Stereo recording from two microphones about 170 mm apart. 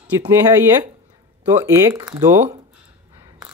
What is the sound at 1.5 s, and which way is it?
Speech, 15° right (ahead or behind).